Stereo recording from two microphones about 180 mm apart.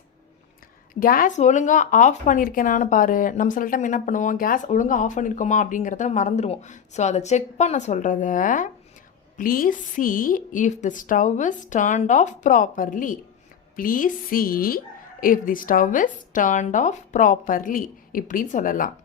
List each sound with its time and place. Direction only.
0.9 s speech: 50° left (ahead or behind)